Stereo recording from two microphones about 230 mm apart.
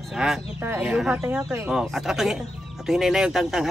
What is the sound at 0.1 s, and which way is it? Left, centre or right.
Speech, centre.